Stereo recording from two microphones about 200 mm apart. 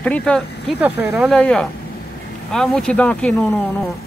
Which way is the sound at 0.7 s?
5° right (ahead or behind).